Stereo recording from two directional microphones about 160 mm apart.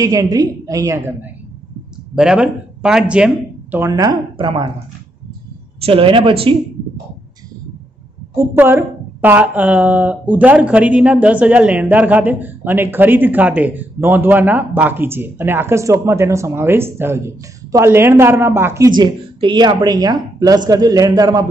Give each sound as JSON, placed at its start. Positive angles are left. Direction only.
{"t": 0.0, "sound": "a woman's voice", "side_deg": -20}
{"t": 2.1, "sound": "speech", "side_deg": -5}
{"t": 3.7, "sound": "a woman's voice", "side_deg": -20}
{"t": 5.9, "sound": "speech", "side_deg": -35}
{"t": 8.4, "sound": "a woman's voice", "side_deg": -15}
{"t": 18.9, "sound": "a woman's voice", "side_deg": -30}